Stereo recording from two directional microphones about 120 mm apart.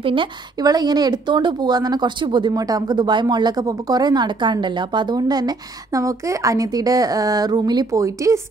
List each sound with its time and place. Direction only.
0.0 s a woman's voice: 45° right (ahead or behind)
0.6 s speech: 35° right (ahead or behind)